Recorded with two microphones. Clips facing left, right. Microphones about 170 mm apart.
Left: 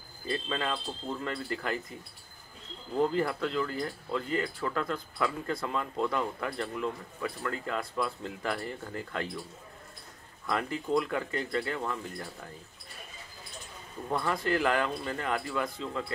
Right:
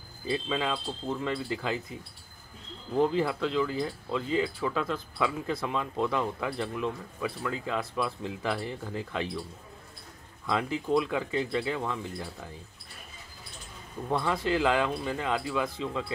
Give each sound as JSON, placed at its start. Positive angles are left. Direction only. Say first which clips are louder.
{"t": 0.3, "sound": "speech", "louder": "right 3 dB", "side_deg": -10}
{"t": 3.0, "sound": "speech", "louder": "right 2 dB", "side_deg": -15}
{"t": 10.4, "sound": "speech", "louder": "right 2 dB", "side_deg": -15}
{"t": 14.0, "sound": "speech", "louder": "right 2 dB", "side_deg": -15}